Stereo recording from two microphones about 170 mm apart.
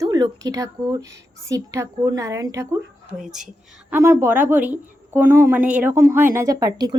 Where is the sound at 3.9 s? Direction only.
15° right (ahead or behind).